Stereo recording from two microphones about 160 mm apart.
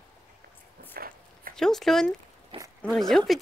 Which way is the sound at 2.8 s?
Centre (ahead or behind).